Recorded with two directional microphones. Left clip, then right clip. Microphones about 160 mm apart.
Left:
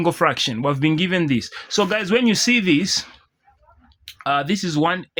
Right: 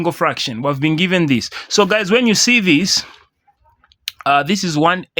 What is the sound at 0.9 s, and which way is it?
Speech, 35° right (ahead or behind).